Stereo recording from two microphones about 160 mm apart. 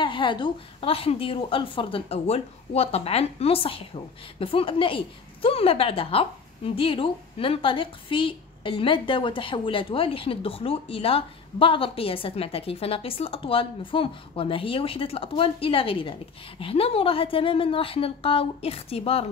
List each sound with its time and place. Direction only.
0.0 s a woman's voice: 30° left (ahead or behind)